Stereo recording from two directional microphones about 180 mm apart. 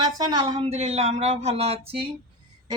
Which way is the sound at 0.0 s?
25° right (ahead or behind).